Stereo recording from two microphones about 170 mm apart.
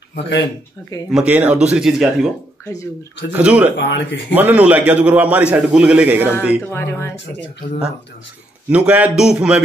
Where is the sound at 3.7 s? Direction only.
90° left.